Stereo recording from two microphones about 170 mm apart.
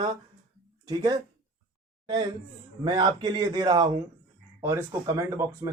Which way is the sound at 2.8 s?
25° right (ahead or behind).